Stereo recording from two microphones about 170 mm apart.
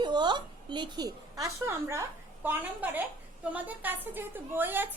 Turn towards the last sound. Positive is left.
turn(degrees=-10)  # may be behind; listen again after turning